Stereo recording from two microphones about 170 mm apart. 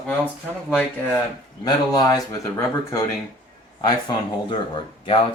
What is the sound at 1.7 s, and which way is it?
Speech, 25° left (ahead or behind).